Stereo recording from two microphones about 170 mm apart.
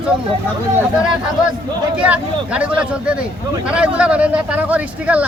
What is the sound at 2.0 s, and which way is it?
A man's voice, 5° right (ahead or behind).